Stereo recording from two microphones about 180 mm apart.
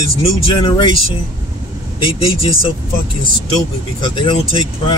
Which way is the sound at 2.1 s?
35° left (ahead or behind).